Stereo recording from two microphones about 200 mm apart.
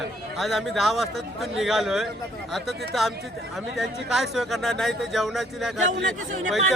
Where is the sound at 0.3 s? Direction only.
Centre (ahead or behind).